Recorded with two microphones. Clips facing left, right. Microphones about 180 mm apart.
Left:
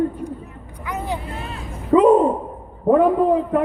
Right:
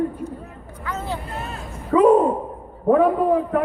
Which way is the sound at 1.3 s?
45° right (ahead or behind).